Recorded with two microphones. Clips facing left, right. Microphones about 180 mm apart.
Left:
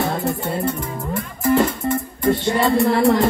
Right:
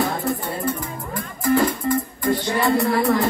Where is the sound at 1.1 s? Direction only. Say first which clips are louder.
Left 2 dB; 25° left (ahead or behind).